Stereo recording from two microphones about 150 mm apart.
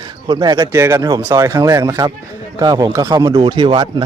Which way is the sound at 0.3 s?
25° right (ahead or behind).